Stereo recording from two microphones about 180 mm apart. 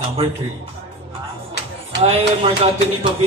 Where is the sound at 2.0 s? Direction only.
35° right (ahead or behind).